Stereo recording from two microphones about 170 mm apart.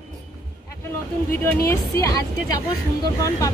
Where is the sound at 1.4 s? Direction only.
15° left (ahead or behind).